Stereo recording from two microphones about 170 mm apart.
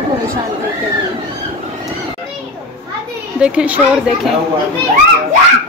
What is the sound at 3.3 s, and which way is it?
A woman's voice, 5° right (ahead or behind).